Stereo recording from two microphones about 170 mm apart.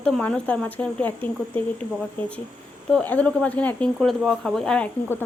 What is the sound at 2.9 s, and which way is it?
A woman's voice, 5° left (ahead or behind).